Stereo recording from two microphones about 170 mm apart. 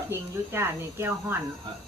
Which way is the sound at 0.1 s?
15° right (ahead or behind).